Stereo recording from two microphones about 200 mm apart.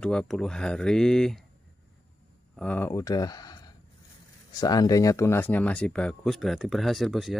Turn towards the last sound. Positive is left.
turn(degrees=0)  # may be behind; listen again after turning